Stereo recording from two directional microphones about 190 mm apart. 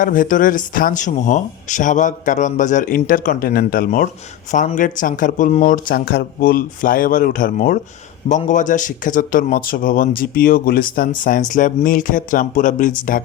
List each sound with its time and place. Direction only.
0.0 s speech: 45° left (ahead or behind)